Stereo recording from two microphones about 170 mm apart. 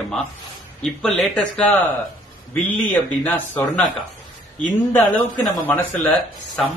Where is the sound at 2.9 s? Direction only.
10° left (ahead or behind).